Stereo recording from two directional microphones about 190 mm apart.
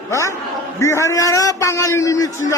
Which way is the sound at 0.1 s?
15° left (ahead or behind).